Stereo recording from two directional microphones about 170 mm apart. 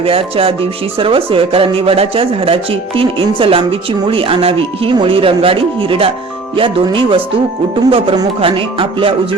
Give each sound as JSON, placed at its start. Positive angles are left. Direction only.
{"t": 0.0, "sound": "speech", "side_deg": -35}